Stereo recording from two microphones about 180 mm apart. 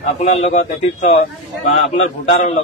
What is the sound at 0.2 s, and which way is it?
A man's voice, 35° left (ahead or behind).